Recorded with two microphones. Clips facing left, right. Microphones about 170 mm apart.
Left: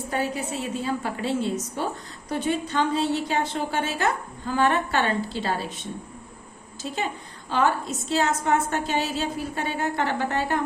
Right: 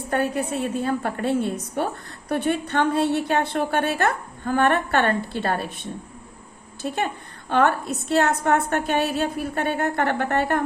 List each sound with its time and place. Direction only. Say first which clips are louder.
0.1 s a woman's voice: right 5 dB; 55° right (ahead or behind)